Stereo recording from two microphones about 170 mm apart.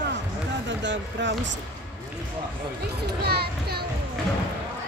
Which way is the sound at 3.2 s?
70° right (ahead or behind).